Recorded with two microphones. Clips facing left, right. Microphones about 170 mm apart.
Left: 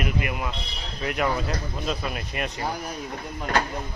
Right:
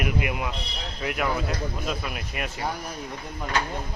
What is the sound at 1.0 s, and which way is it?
Speech, centre (ahead or behind).